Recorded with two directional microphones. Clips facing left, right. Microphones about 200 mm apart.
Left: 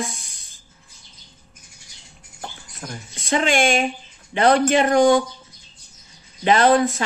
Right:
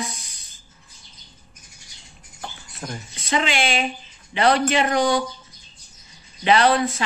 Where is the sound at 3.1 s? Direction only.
45° left (ahead or behind).